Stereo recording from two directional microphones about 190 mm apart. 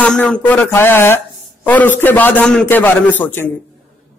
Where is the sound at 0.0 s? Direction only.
5° left (ahead or behind).